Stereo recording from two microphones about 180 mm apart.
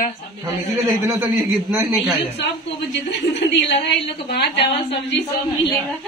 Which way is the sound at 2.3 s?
80° left.